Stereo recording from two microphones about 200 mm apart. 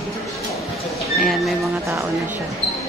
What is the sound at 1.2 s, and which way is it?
Speech, centre (ahead or behind).